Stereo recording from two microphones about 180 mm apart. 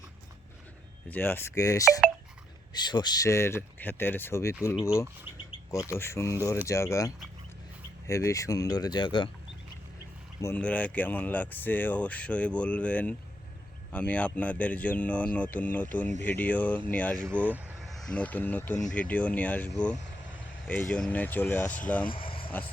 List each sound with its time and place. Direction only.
1.0 s speech: 10° left (ahead or behind)
2.8 s speech: 25° left (ahead or behind)
10.4 s speech: 10° left (ahead or behind)
17.2 s speech: 10° right (ahead or behind)
17.8 s speech: centre (ahead or behind)
22.0 s vehicle: 30° left (ahead or behind)